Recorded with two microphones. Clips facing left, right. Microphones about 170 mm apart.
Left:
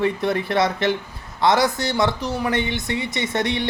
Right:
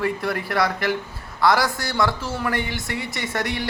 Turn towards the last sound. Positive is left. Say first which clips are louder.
# left 4 dB
turn(degrees=20)  # may be behind; listen again after turning